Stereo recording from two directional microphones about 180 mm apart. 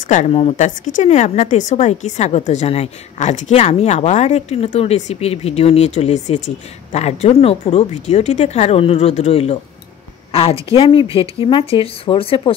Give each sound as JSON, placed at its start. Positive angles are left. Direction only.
{"t": 0.1, "sound": "a woman's voice", "side_deg": 40}